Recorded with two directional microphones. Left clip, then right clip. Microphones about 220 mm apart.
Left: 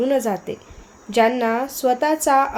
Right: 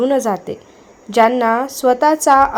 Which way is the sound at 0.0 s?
20° right (ahead or behind).